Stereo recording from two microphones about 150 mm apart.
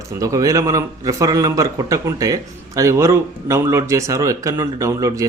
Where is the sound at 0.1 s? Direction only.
20° right (ahead or behind).